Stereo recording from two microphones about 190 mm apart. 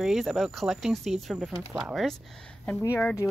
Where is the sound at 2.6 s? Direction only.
10° left (ahead or behind).